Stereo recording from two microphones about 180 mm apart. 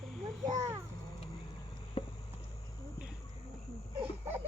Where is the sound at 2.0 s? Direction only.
30° left (ahead or behind).